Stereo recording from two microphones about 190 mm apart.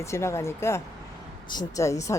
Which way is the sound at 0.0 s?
15° left (ahead or behind).